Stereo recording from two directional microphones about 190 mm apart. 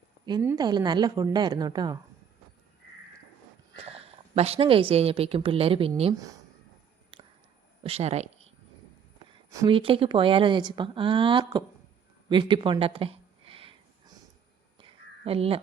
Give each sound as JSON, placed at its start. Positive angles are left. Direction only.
{"t": 0.3, "sound": "speech", "side_deg": -20}
{"t": 3.8, "sound": "a woman's voice", "side_deg": -30}
{"t": 7.9, "sound": "speech", "side_deg": -35}
{"t": 9.5, "sound": "speech", "side_deg": -15}
{"t": 9.7, "sound": "speech", "side_deg": -30}
{"t": 12.3, "sound": "a sound", "side_deg": -25}
{"t": 14.8, "sound": "a sound", "side_deg": -30}